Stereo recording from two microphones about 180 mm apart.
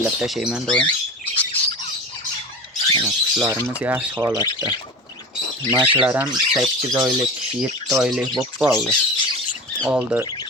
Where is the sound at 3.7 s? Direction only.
10° right (ahead or behind).